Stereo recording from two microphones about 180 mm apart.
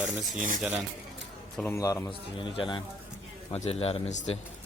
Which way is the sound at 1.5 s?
10° left (ahead or behind).